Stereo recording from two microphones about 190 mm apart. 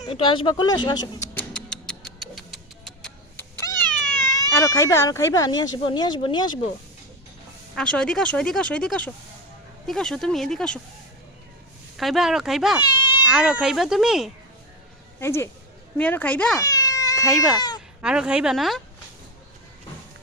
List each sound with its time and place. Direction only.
0.0 s speech: 25° left (ahead or behind)
1.5 s music: 5° left (ahead or behind)
3.6 s cat: 15° left (ahead or behind)
4.4 s speech: 15° left (ahead or behind)
7.8 s speech: 5° left (ahead or behind)
11.9 s speech: centre (ahead or behind)
12.8 s cat: 25° left (ahead or behind)
13.2 s speech: 5° right (ahead or behind)
15.2 s speech: 15° left (ahead or behind)
16.6 s cat: 20° left (ahead or behind)
17.2 s speech: centre (ahead or behind)